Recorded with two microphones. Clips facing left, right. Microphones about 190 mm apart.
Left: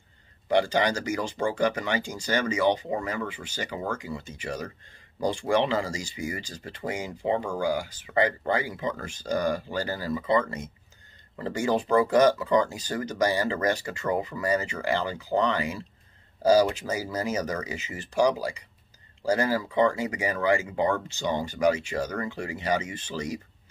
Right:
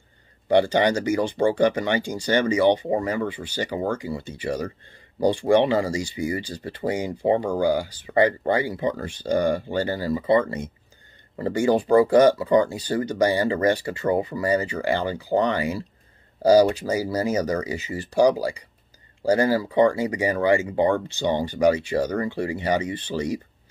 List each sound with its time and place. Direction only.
0.5 s speech: 30° right (ahead or behind)